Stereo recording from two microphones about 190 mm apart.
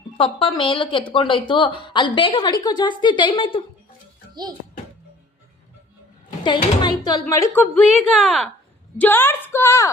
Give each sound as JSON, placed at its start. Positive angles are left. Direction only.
{"t": 0.2, "sound": "a woman's voice", "side_deg": 25}
{"t": 6.4, "sound": "speech", "side_deg": 25}